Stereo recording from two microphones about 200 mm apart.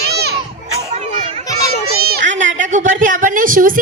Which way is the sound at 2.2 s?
40° right (ahead or behind).